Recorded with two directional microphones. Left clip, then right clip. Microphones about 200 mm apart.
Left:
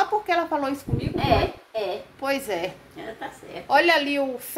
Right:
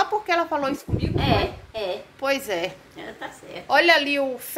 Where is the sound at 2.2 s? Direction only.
5° right (ahead or behind).